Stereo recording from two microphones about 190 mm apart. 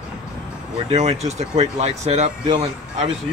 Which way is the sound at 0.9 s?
35° right (ahead or behind).